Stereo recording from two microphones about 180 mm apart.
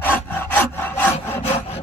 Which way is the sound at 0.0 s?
10° left (ahead or behind).